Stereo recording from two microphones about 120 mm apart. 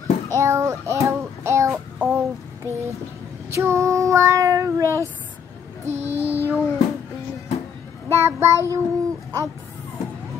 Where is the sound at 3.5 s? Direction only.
25° right (ahead or behind).